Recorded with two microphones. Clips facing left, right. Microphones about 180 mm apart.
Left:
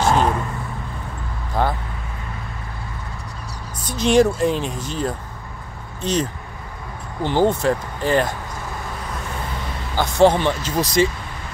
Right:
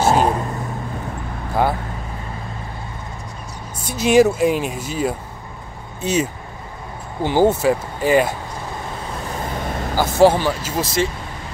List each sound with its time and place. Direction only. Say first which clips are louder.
0.1 s vehicle: right 1 dB; 35° right (ahead or behind)
1.5 s vehicle: right 2 dB; 10° right (ahead or behind)
3.8 s speech: right 2 dB; 5° right (ahead or behind)
9.7 s vehicle: right 6 dB; 50° right (ahead or behind)
9.9 s speech: right 1 dB; 5° right (ahead or behind)